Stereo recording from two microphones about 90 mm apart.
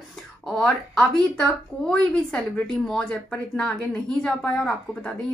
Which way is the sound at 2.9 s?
10° left (ahead or behind).